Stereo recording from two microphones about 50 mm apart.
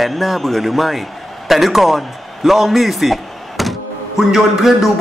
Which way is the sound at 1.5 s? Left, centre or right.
Centre.